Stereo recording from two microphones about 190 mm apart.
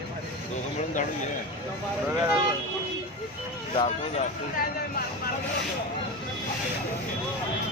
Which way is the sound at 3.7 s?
35° left (ahead or behind).